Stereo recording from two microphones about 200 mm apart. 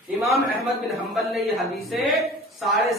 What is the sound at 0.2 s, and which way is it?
Speech, centre (ahead or behind).